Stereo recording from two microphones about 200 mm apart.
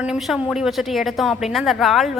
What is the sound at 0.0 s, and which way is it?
A woman's voice, 5° right (ahead or behind).